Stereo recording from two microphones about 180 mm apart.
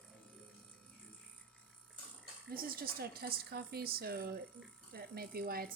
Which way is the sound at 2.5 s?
55° right (ahead or behind).